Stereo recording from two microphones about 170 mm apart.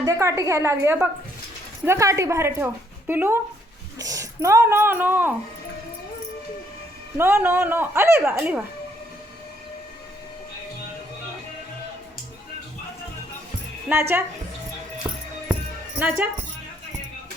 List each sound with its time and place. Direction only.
0.0 s speech: 20° right (ahead or behind)
7.2 s speech: 15° right (ahead or behind)
13.9 s speech: 15° right (ahead or behind)
15.1 s music: 15° right (ahead or behind)